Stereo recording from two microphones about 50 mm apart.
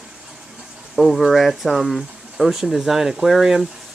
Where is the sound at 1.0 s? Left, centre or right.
Centre.